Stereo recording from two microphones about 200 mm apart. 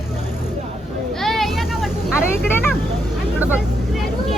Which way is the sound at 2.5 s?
10° left (ahead or behind).